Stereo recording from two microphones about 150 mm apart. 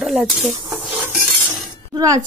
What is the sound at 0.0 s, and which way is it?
Stir, centre (ahead or behind).